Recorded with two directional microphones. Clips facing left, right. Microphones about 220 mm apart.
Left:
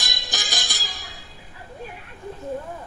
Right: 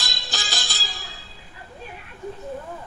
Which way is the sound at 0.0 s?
15° left (ahead or behind).